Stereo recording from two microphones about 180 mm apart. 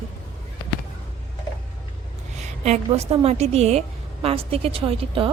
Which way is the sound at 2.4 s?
40° right (ahead or behind).